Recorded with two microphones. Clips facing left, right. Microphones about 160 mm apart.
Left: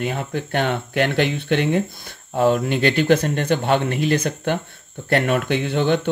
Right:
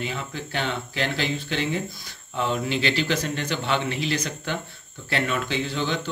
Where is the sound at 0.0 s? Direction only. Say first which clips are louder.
Left 7 dB; 55° left (ahead or behind).